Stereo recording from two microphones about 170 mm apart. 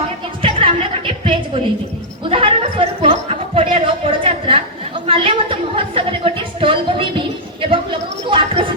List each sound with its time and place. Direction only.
0.4 s music: 30° right (ahead or behind)
2.3 s a sound: 30° right (ahead or behind)
7.7 s chatter: 30° right (ahead or behind)